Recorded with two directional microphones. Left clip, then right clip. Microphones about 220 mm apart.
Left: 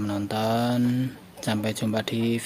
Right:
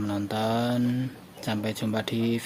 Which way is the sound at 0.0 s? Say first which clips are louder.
Left 1 dB; 10° left (ahead or behind).